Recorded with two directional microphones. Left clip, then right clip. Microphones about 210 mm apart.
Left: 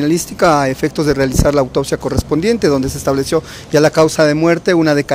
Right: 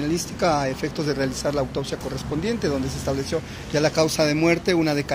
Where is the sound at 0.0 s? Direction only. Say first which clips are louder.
Left 10 dB; 50° left (ahead or behind).